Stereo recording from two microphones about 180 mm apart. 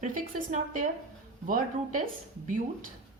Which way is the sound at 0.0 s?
45° right (ahead or behind).